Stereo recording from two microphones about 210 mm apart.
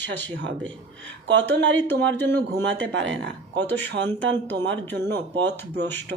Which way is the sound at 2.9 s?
60° right (ahead or behind).